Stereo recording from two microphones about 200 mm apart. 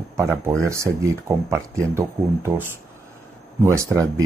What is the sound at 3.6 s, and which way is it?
Speech, 15° right (ahead or behind).